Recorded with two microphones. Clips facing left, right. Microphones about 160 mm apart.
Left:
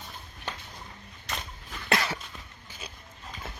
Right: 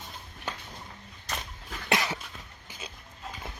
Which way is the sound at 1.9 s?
15° right (ahead or behind).